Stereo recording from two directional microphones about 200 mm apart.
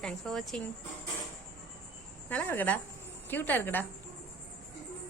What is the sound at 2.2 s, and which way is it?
A woman's voice, 10° left (ahead or behind).